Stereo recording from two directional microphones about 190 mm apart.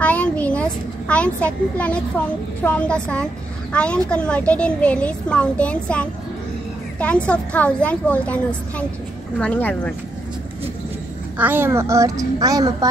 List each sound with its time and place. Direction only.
0.0 s a child's voice: 5° left (ahead or behind)
7.2 s a child's voice: 5° left (ahead or behind)
11.3 s a child's voice: 10° right (ahead or behind)